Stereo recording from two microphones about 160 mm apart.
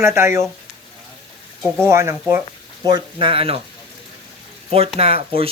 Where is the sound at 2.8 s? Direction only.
30° right (ahead or behind).